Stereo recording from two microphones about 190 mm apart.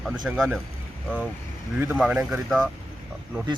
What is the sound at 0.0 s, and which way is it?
Speech, centre (ahead or behind).